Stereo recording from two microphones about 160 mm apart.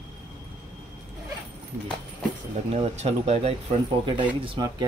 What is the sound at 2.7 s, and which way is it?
Speech, 40° right (ahead or behind).